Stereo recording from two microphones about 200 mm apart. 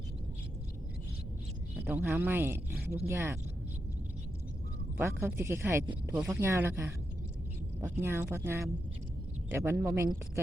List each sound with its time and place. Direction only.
1.8 s speech: 10° right (ahead or behind)
2.7 s a sound: 10° right (ahead or behind)
3.1 s speech: 10° right (ahead or behind)
4.9 s speech: 10° right (ahead or behind)
5.8 s speech: 25° right (ahead or behind)
6.1 s speech: 10° right (ahead or behind)